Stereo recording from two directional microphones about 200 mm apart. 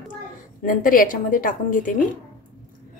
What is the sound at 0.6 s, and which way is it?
Speech, 45° left (ahead or behind).